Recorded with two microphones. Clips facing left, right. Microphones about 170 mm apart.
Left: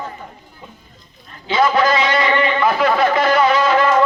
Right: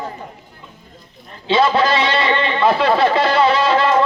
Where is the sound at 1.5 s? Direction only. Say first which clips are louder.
Even; 30° right (ahead or behind).